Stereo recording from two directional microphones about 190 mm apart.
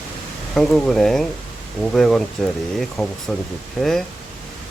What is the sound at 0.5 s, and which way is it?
Speech, centre (ahead or behind).